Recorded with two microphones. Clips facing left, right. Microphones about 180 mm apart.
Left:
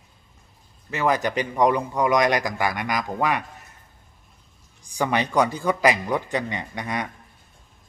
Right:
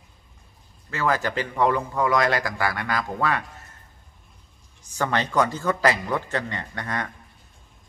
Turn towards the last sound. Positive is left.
turn(degrees=15)  # may be behind; listen again after turning